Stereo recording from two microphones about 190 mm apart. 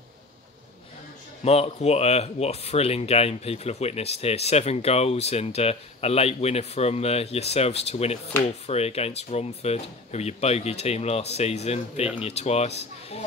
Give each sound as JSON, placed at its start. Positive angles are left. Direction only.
{"t": 1.4, "sound": "speech", "side_deg": 35}